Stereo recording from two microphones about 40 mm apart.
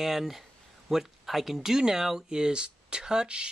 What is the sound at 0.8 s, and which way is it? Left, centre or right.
Speech, centre.